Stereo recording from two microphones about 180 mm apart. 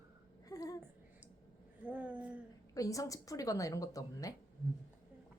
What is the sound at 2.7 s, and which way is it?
A woman's voice, 20° left (ahead or behind).